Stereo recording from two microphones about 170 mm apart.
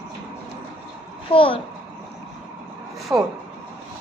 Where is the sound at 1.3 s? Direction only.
30° left (ahead or behind).